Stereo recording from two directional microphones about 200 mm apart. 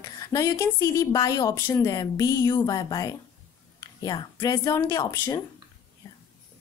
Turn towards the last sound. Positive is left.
turn(degrees=15)  # may be behind; listen again after turning